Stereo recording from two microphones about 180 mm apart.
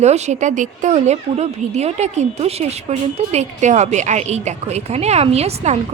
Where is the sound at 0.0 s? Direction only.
40° right (ahead or behind).